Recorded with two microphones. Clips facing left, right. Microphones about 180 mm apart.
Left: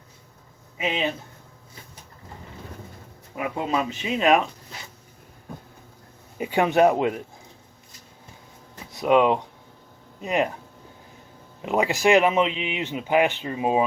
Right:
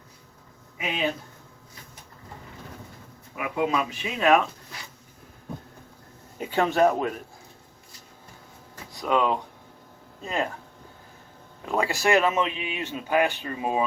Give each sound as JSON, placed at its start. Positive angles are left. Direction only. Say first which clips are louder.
{"t": 3.3, "sound": "speech", "louder": "even", "side_deg": 30}
{"t": 6.4, "sound": "speech", "louder": "left 3 dB", "side_deg": 15}
{"t": 8.9, "sound": "speech", "louder": "left 5 dB", "side_deg": 20}
{"t": 11.6, "sound": "speech", "louder": "left 4 dB", "side_deg": 20}